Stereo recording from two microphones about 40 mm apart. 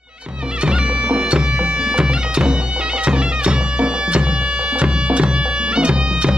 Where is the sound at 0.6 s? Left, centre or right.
Right.